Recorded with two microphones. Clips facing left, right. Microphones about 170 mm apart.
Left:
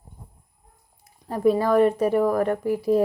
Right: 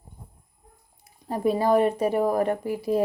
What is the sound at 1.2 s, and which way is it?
Speech, 20° right (ahead or behind).